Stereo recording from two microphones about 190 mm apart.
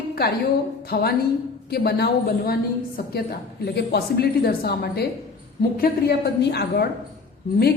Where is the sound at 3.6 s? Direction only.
60° left (ahead or behind).